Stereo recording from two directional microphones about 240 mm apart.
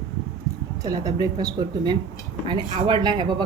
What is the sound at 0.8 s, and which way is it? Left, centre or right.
A woman's voice, centre.